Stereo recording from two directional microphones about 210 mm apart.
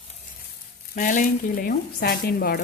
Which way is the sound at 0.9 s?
40° left (ahead or behind).